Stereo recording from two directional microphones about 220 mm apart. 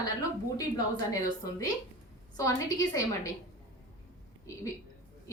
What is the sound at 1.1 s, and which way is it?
A woman's voice, 15° left (ahead or behind).